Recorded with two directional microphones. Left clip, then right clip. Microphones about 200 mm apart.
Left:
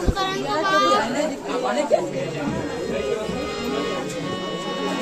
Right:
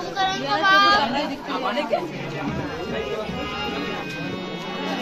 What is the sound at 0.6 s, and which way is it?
Speech, 25° right (ahead or behind).